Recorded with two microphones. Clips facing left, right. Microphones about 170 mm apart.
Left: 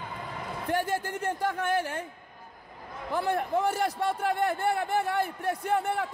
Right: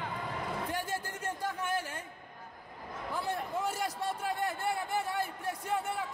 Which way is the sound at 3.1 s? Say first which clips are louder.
Left 8 dB; 65° left (ahead or behind).